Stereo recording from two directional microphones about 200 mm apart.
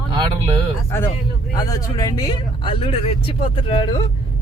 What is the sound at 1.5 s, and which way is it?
Speech, 20° left (ahead or behind).